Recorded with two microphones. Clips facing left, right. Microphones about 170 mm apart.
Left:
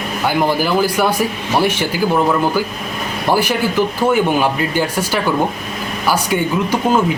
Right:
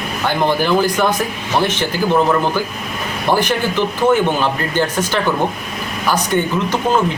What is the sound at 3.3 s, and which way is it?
Speech, 10° left (ahead or behind).